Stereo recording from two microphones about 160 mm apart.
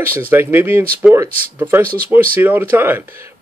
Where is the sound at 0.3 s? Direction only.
15° right (ahead or behind).